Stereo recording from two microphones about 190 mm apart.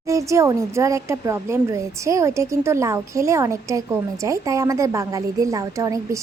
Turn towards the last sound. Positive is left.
turn(degrees=-15)  # may be behind; listen again after turning